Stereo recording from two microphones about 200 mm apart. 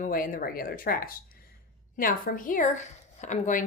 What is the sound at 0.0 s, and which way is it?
Speech, 45° left (ahead or behind).